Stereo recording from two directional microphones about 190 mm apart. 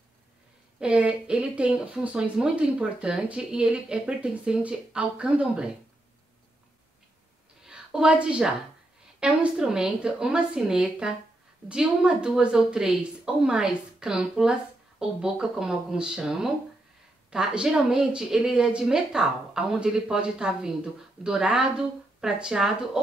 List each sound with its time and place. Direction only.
0.7 s speech: 5° right (ahead or behind)
7.6 s a woman's voice: 5° right (ahead or behind)